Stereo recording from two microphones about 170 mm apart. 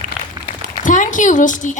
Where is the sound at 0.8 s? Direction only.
50° left (ahead or behind).